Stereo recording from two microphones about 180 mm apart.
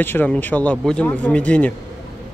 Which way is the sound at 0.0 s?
10° left (ahead or behind).